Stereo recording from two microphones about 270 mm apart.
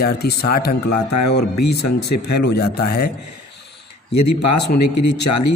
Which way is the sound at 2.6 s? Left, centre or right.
Left.